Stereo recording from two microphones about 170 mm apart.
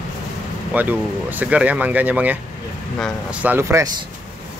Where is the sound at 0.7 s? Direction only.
10° right (ahead or behind).